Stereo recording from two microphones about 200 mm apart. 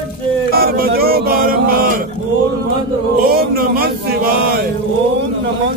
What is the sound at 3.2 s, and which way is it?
Music, 50° right (ahead or behind).